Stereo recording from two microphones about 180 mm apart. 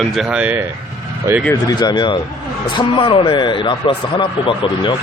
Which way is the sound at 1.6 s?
25° left (ahead or behind).